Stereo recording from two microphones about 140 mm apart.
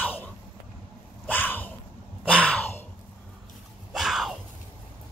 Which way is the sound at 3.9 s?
Centre (ahead or behind).